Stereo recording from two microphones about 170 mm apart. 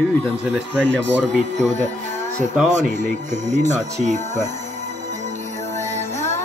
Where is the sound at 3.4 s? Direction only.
45° right (ahead or behind).